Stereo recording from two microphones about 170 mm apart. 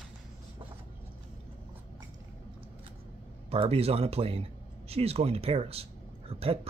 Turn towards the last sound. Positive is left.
turn(degrees=-35)  # may be behind; listen again after turning